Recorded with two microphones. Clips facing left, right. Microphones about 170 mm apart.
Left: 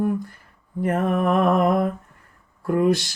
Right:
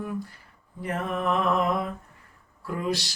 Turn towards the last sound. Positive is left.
turn(degrees=50)  # may be behind; listen again after turning